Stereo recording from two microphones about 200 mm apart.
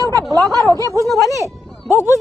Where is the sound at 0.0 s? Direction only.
15° right (ahead or behind).